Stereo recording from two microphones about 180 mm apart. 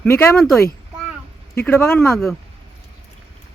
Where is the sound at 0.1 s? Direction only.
10° left (ahead or behind).